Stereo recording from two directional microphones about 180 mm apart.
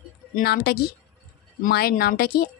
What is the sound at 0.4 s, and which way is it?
A woman's voice, 65° left (ahead or behind).